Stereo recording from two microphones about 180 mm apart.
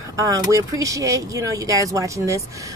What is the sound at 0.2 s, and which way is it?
Speech, 20° right (ahead or behind).